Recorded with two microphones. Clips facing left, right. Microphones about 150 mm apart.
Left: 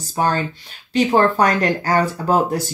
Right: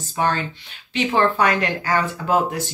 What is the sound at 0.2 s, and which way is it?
Speech, 40° left (ahead or behind).